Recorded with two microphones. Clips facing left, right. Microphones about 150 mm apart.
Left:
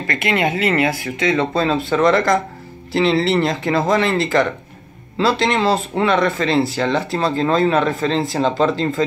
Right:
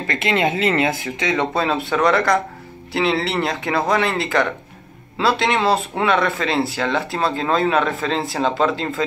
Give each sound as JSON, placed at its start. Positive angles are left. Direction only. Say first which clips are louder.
{"t": 0.0, "sound": "speech", "louder": "even", "side_deg": -25}